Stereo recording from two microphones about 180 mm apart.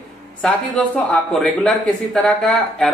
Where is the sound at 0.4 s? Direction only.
5° left (ahead or behind).